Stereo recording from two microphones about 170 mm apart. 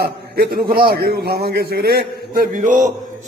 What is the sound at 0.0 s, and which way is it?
A man's voice, 60° right (ahead or behind).